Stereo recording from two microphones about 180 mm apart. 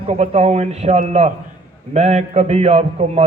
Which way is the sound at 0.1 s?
35° right (ahead or behind).